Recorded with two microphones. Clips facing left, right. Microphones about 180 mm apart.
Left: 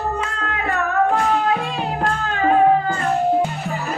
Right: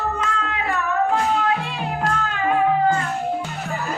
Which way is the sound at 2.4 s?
35° left (ahead or behind).